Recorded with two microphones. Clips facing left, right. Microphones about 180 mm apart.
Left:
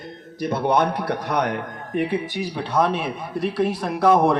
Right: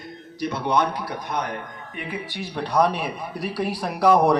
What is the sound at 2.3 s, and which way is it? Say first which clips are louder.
Speech: even; 10° left (ahead or behind).